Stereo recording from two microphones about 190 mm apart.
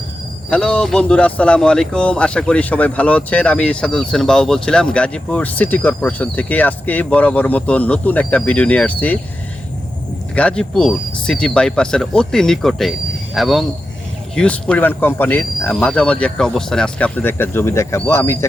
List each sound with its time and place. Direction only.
0.5 s speech: 5° left (ahead or behind)
10.3 s speech: 5° left (ahead or behind)